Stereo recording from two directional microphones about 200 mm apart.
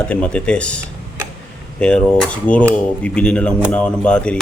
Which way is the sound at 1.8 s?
5° left (ahead or behind).